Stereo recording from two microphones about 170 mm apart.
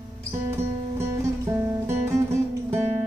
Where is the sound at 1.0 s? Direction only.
15° right (ahead or behind).